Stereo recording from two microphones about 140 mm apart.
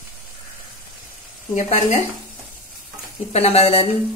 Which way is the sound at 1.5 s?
60° left (ahead or behind).